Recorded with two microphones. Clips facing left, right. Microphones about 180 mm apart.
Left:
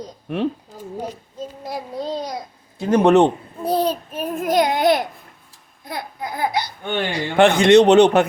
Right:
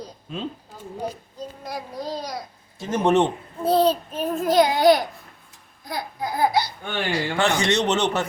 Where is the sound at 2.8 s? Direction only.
65° left (ahead or behind).